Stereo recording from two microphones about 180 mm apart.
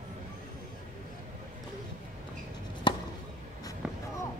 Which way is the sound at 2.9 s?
25° left (ahead or behind).